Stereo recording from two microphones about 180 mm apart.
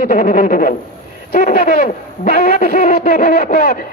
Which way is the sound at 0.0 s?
45° left (ahead or behind).